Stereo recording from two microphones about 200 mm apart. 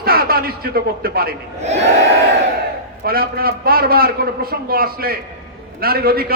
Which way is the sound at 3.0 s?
50° right (ahead or behind).